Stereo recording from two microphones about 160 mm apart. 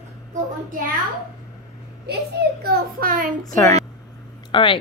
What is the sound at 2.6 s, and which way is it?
Speech, 70° right (ahead or behind).